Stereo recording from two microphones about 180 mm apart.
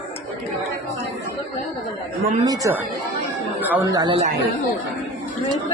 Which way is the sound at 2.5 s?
15° right (ahead or behind).